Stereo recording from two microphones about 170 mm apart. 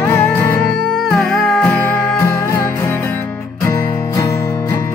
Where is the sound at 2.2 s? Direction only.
15° left (ahead or behind).